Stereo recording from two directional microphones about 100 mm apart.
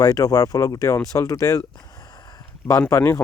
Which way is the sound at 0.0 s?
40° left (ahead or behind).